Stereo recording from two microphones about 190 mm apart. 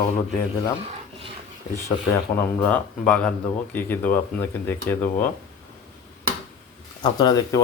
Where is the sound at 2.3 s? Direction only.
15° left (ahead or behind).